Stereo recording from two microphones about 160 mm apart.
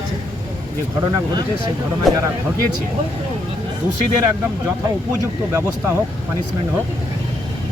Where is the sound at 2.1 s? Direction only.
Centre (ahead or behind).